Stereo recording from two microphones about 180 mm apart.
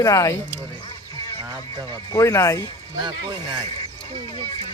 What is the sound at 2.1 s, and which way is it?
Speech, 15° left (ahead or behind).